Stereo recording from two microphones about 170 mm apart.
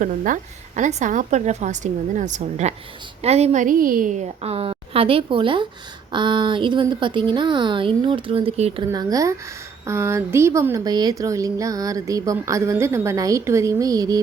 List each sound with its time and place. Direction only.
0.8 s a woman's voice: 45° right (ahead or behind)
8.9 s speech: 20° right (ahead or behind)